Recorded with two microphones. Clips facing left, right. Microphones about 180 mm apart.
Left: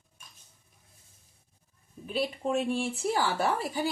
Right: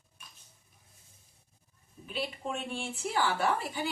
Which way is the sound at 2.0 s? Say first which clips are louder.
Left 6 dB; 40° left (ahead or behind).